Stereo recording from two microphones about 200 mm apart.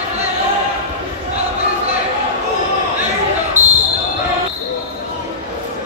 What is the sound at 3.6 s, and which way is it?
Basketball bounce, 35° right (ahead or behind).